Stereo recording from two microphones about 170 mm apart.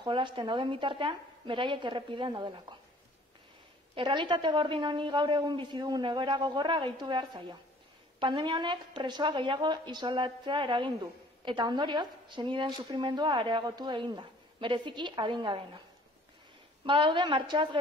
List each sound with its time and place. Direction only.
0.0 s speech: 30° right (ahead or behind)
3.9 s speech: 25° right (ahead or behind)
16.8 s speech: 30° right (ahead or behind)